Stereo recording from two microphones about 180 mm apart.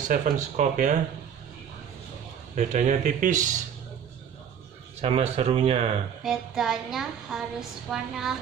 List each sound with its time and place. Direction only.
0.1 s speech: 45° right (ahead or behind)
2.5 s speech: 40° right (ahead or behind)
5.0 s speech: 35° right (ahead or behind)
6.2 s a woman's voice: centre (ahead or behind)